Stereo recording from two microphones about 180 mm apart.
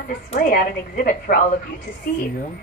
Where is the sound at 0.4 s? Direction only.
55° left (ahead or behind).